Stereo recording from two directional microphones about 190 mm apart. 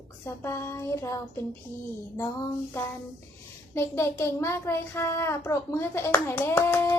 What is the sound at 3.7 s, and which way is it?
A child's voice, 15° left (ahead or behind).